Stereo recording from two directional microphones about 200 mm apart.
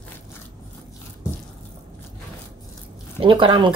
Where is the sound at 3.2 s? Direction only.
25° right (ahead or behind).